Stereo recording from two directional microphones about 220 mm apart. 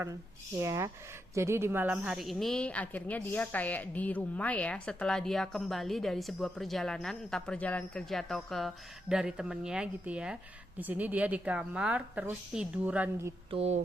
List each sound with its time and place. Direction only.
0.6 s a woman's voice: 15° right (ahead or behind)
13.5 s speech: 30° right (ahead or behind)